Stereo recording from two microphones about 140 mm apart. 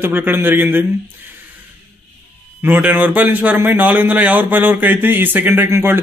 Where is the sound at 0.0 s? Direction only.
15° right (ahead or behind).